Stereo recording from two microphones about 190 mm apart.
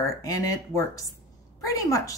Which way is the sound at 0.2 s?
15° left (ahead or behind).